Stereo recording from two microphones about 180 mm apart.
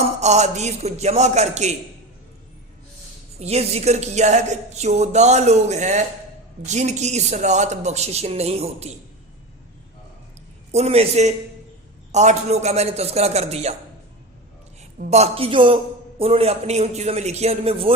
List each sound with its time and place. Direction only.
0.0 s a man's voice: 40° right (ahead or behind)
3.4 s a man's voice: 35° right (ahead or behind)
10.7 s a man's voice: 35° right (ahead or behind)
15.1 s a man's voice: 35° right (ahead or behind)